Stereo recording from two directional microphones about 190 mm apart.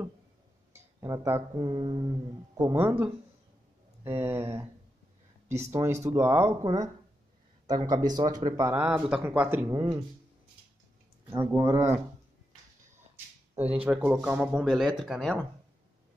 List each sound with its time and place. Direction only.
1.0 s speech: 15° right (ahead or behind)
1.7 s speech: 25° right (ahead or behind)
5.7 s speech: 15° right (ahead or behind)
9.8 s speech: 20° right (ahead or behind)
11.2 s speech: 15° right (ahead or behind)
13.1 s a sound: 10° right (ahead or behind)
13.8 s speech: 5° right (ahead or behind)